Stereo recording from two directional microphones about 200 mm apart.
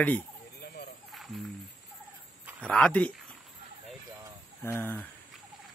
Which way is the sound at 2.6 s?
5° left (ahead or behind).